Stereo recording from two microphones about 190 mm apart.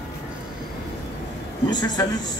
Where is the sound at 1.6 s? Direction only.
20° left (ahead or behind).